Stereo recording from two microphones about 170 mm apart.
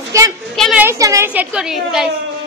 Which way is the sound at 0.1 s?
15° right (ahead or behind).